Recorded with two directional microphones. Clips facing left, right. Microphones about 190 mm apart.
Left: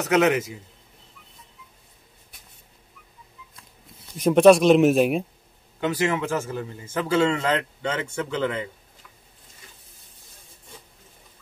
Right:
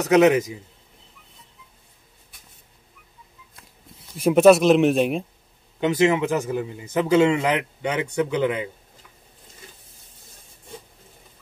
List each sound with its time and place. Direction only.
0.0 s a man's voice: 15° right (ahead or behind)
4.2 s speech: 5° right (ahead or behind)
5.8 s a man's voice: 20° right (ahead or behind)